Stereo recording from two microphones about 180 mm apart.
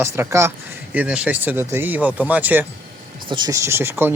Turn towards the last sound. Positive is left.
turn(degrees=-10)  # may be behind; listen again after turning